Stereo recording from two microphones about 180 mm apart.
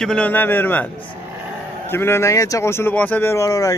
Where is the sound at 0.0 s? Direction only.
5° left (ahead or behind).